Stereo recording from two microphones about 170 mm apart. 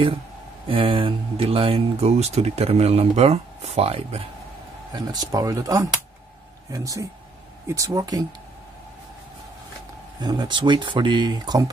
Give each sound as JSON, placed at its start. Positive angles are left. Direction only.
{"t": 0.7, "sound": "speech", "side_deg": -30}
{"t": 4.9, "sound": "speech", "side_deg": -20}
{"t": 10.2, "sound": "speech", "side_deg": -25}